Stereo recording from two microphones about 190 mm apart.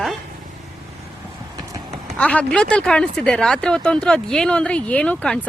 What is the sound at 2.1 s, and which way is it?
Speech, 5° left (ahead or behind).